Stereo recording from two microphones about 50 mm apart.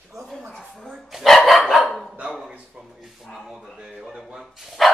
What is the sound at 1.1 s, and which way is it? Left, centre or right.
Dog, centre.